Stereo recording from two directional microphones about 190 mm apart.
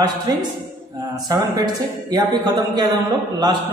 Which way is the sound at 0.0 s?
20° right (ahead or behind).